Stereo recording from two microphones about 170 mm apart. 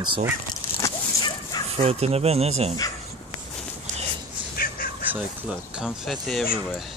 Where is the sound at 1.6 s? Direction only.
35° right (ahead or behind).